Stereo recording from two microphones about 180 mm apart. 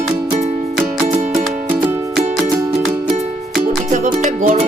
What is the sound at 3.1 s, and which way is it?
Music, 35° right (ahead or behind).